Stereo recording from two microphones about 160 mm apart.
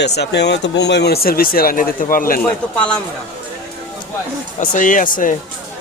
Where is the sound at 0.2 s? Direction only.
90° left; by 2.4 s 60° left (ahead or behind).